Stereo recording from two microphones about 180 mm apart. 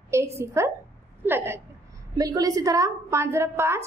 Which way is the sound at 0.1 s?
15° right (ahead or behind).